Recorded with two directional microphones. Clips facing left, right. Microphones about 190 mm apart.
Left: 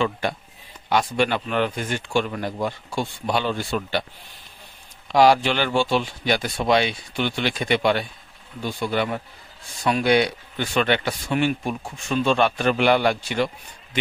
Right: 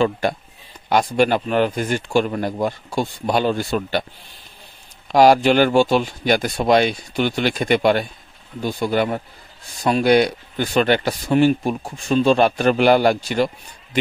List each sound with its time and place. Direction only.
0.0 s speech: 40° right (ahead or behind)
5.1 s speech: 45° right (ahead or behind)